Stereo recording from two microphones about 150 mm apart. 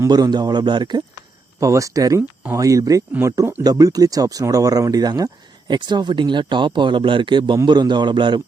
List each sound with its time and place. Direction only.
0.0 s speech: 25° right (ahead or behind)